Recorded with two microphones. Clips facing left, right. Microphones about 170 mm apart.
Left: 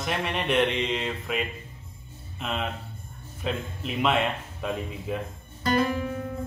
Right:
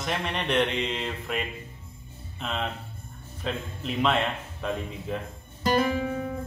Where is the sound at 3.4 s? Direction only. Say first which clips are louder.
Left 1 dB; 5° left (ahead or behind).